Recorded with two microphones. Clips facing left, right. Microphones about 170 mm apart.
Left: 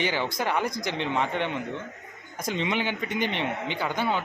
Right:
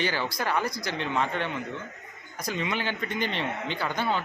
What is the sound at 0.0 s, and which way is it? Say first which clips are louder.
A man's voice: left 2 dB; 15° left (ahead or behind).